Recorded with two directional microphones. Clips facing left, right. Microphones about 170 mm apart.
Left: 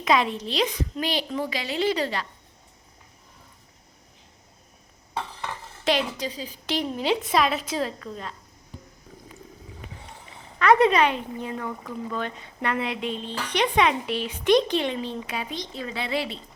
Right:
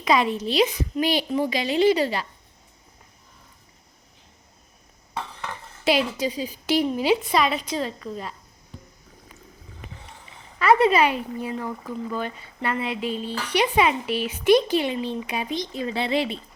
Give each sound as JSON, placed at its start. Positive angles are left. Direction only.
{"t": 0.0, "sound": "speech", "side_deg": 0}
{"t": 5.8, "sound": "speech", "side_deg": -5}
{"t": 10.6, "sound": "speech", "side_deg": -5}
{"t": 15.9, "sound": "speech", "side_deg": -25}